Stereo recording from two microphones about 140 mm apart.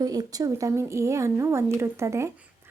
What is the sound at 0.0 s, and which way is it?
A woman's voice, 25° right (ahead or behind).